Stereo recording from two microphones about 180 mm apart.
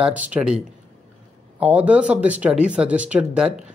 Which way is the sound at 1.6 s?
5° right (ahead or behind).